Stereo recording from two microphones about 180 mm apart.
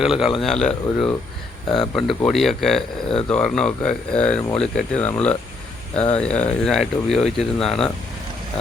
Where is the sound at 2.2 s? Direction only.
Centre (ahead or behind).